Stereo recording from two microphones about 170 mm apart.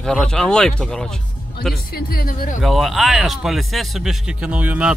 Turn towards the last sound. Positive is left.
turn(degrees=-10)  # may be behind; listen again after turning